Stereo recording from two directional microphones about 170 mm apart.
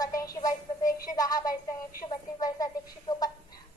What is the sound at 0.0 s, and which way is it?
Music, 20° left (ahead or behind).